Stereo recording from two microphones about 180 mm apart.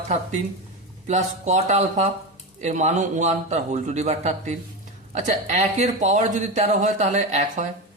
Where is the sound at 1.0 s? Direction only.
40° right (ahead or behind).